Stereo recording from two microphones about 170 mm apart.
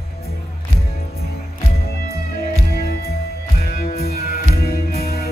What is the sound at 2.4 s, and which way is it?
Music, 65° left (ahead or behind).